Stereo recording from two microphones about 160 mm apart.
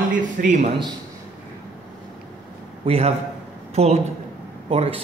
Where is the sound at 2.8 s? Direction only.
40° right (ahead or behind).